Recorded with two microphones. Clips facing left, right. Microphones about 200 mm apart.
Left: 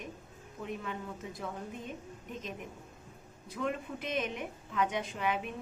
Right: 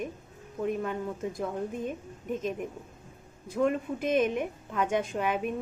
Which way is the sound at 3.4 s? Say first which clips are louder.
Right 8 dB; 45° right (ahead or behind).